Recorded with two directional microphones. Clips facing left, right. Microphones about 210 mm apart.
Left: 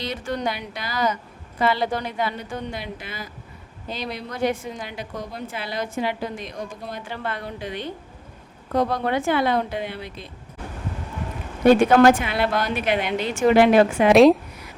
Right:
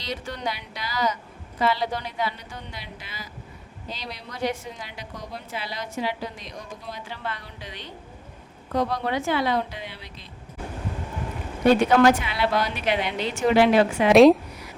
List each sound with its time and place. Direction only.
0.0 s a woman's voice: 50° left (ahead or behind)
11.6 s a woman's voice: 50° left (ahead or behind)
14.1 s a woman's voice: centre (ahead or behind)